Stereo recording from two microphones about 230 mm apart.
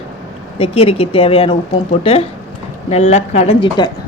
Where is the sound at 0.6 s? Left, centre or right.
Left.